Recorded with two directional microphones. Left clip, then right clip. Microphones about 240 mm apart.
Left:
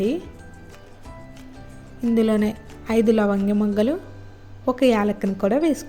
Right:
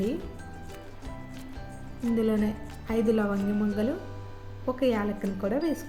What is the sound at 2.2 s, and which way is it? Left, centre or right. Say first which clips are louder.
Speech: left 7 dB; left.